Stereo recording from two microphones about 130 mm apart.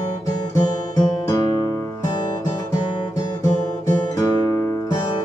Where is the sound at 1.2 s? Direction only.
25° left (ahead or behind).